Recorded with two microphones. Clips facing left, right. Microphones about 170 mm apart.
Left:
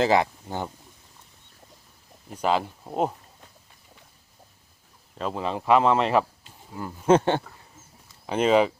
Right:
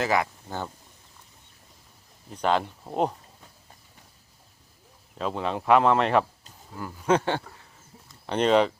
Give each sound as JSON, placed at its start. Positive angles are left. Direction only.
{"t": 0.0, "sound": "speech", "side_deg": 25}
{"t": 2.3, "sound": "speech", "side_deg": 5}
{"t": 5.1, "sound": "speech", "side_deg": 0}
{"t": 6.7, "sound": "speech", "side_deg": 20}
{"t": 8.0, "sound": "a sound", "side_deg": 5}